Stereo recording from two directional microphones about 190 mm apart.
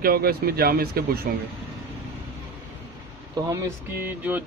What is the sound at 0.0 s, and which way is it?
Speech, 50° right (ahead or behind).